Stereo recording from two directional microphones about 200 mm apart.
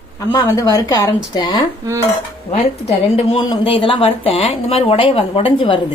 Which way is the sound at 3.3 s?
25° left (ahead or behind).